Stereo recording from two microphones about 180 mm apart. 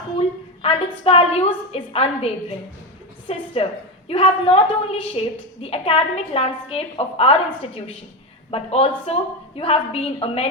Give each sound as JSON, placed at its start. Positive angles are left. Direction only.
{"t": 0.2, "sound": "a woman's voice", "side_deg": 35}
{"t": 8.4, "sound": "a woman's voice", "side_deg": 35}